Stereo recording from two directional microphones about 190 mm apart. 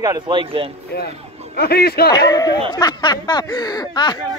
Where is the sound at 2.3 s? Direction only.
20° left (ahead or behind).